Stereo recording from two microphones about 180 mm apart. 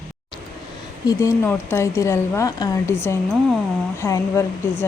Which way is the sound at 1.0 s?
15° left (ahead or behind).